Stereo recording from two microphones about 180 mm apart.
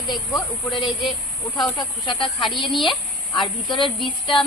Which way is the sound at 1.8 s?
25° left (ahead or behind).